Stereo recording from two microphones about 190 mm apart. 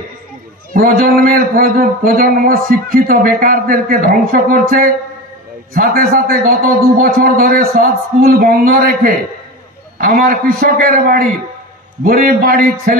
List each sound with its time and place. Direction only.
0.7 s a man's voice: 50° right (ahead or behind)